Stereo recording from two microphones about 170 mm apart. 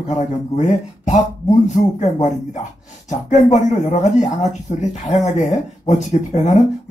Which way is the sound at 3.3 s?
45° left (ahead or behind).